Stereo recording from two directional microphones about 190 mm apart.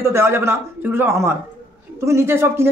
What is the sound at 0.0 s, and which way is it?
Speech, 15° right (ahead or behind).